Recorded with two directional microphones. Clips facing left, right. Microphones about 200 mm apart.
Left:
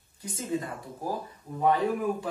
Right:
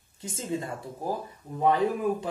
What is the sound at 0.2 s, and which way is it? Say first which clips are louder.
Speech: even; 25° right (ahead or behind).